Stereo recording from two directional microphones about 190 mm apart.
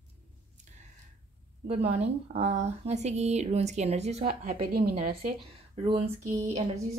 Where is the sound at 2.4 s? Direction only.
35° right (ahead or behind).